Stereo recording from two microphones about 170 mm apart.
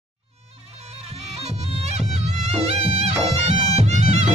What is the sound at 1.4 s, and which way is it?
Music, 40° right (ahead or behind).